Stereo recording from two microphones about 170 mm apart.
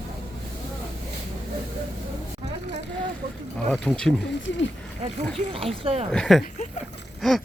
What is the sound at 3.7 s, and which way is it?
Speech, 5° left (ahead or behind).